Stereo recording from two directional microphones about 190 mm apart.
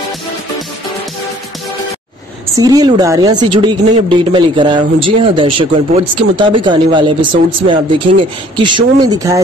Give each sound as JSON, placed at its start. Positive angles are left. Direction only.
{"t": 2.5, "sound": "speech", "side_deg": -20}